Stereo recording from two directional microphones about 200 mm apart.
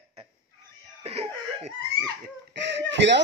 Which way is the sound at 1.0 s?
30° right (ahead or behind).